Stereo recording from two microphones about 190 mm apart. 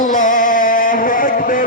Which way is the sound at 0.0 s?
45° left (ahead or behind).